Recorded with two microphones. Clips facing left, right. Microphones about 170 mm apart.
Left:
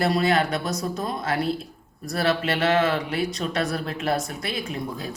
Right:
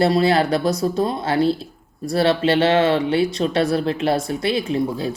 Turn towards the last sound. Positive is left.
turn(degrees=-30)  # may be behind; listen again after turning